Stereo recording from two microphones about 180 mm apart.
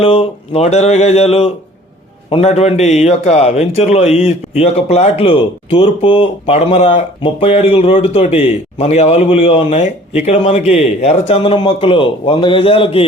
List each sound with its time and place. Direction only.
0.0 s a man's voice: 30° left (ahead or behind)